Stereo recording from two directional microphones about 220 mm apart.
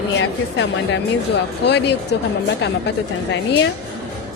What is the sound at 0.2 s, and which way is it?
A woman's voice, 55° left (ahead or behind).